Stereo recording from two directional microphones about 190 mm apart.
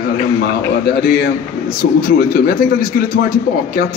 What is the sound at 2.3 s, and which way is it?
Speech, 50° left (ahead or behind).